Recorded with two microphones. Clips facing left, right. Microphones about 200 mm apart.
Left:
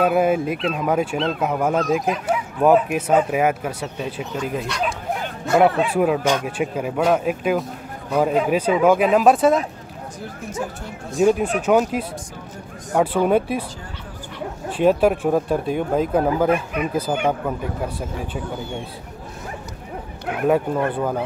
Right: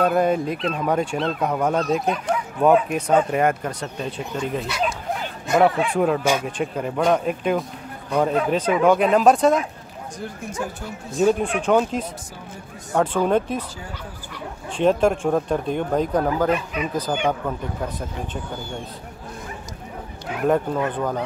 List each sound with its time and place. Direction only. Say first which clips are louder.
0.0 s speech: left 1 dB; 5° left (ahead or behind)
5.9 s speech: left 1 dB; 5° left (ahead or behind)
14.7 s speech: left 2 dB; 5° left (ahead or behind)
16.4 s speech: left 2 dB; 55° left (ahead or behind)
16.9 s speech: left 1 dB; 5° left (ahead or behind)
20.4 s speech: left 1 dB; 5° left (ahead or behind)